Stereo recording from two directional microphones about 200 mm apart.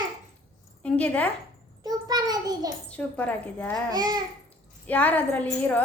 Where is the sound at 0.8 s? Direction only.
5° left (ahead or behind).